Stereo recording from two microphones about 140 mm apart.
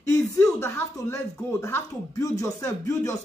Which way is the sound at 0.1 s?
20° left (ahead or behind).